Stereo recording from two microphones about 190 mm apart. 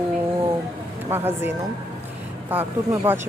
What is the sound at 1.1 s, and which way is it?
Speech, 10° right (ahead or behind).